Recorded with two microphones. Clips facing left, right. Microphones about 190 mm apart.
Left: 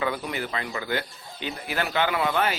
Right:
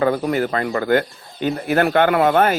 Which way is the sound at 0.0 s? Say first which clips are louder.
Right 10 dB; 45° right (ahead or behind).